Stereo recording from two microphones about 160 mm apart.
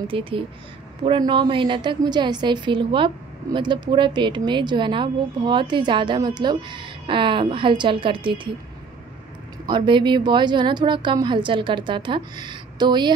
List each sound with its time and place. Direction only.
0.0 s speech: 35° right (ahead or behind)
9.7 s speech: 30° right (ahead or behind)